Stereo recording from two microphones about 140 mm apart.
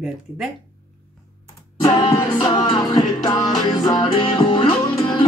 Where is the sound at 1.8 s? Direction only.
30° left (ahead or behind).